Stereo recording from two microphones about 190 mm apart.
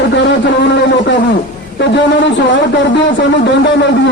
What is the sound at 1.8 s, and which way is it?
Speech, 70° left (ahead or behind).